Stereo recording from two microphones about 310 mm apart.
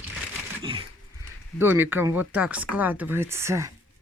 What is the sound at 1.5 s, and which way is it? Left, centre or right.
Speech, centre.